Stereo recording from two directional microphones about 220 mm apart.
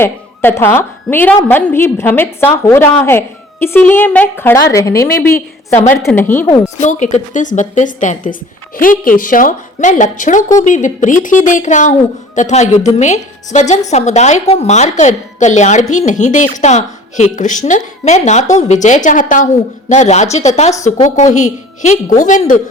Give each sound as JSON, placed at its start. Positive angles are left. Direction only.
{"t": 0.0, "sound": "a woman's voice", "side_deg": 10}
{"t": 6.7, "sound": "a woman's voice", "side_deg": 30}